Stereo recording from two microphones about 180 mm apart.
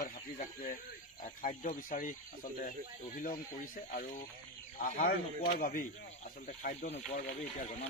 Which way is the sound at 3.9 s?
45° left (ahead or behind).